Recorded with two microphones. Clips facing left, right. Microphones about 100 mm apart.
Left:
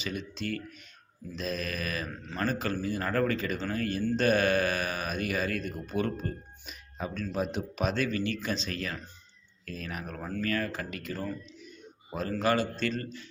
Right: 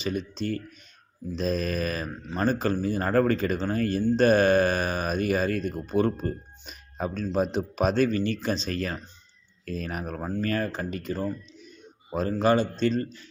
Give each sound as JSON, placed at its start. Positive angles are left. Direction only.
{"t": 0.0, "sound": "speech", "side_deg": -35}
{"t": 2.0, "sound": "a man's voice", "side_deg": -25}
{"t": 7.1, "sound": "speech", "side_deg": -30}
{"t": 10.2, "sound": "speech", "side_deg": -25}
{"t": 12.3, "sound": "a man's voice", "side_deg": -25}